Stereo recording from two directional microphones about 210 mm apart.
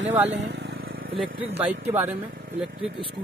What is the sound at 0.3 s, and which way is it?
Vehicle, 60° right (ahead or behind).